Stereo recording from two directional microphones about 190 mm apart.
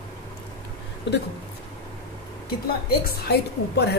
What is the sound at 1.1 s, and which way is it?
Speech, 65° left (ahead or behind).